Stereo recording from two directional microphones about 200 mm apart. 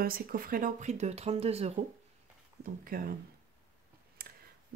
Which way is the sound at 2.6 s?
45° right (ahead or behind).